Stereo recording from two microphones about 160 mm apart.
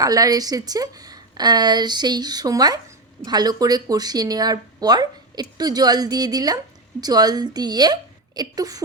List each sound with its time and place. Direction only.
0.0 s speech: 20° right (ahead or behind)